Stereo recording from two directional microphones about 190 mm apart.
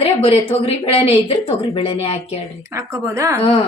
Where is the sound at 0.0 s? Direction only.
30° left (ahead or behind).